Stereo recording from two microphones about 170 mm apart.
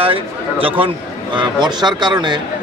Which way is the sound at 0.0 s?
30° right (ahead or behind).